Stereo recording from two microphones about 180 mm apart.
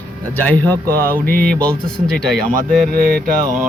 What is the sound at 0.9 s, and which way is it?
Mantra, 55° right (ahead or behind).